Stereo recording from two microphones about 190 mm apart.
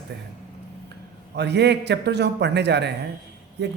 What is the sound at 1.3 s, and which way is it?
A man's voice, 60° right (ahead or behind).